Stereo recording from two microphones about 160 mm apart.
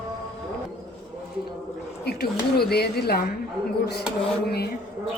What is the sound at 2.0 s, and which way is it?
Speech, 85° left.